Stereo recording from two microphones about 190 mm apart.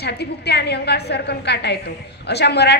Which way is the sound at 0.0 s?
60° left (ahead or behind).